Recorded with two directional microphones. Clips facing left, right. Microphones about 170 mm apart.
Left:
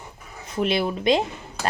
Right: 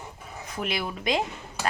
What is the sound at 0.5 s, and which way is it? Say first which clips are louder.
Speech: left 8 dB; 25° left (ahead or behind).